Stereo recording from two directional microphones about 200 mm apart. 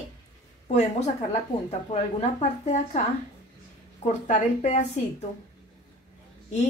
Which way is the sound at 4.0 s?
35° left (ahead or behind).